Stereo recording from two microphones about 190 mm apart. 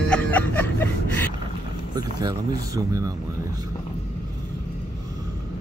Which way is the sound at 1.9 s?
20° right (ahead or behind).